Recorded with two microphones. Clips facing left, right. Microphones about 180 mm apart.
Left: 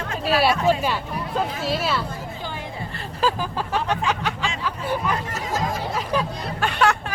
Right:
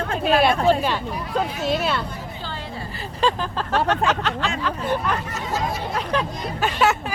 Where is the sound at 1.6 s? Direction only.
5° left (ahead or behind).